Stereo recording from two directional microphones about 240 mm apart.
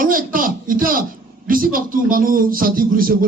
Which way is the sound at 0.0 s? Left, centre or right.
Right.